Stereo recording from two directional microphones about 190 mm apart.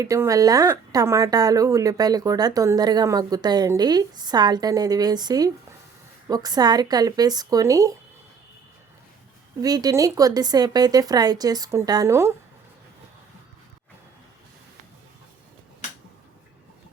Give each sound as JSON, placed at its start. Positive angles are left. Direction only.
{"t": 0.0, "sound": "speech", "side_deg": -15}
{"t": 9.6, "sound": "speech", "side_deg": -20}